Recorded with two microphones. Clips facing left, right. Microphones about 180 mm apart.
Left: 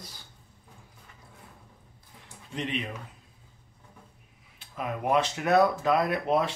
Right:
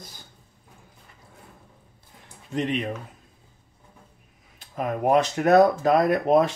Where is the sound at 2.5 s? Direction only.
45° right (ahead or behind).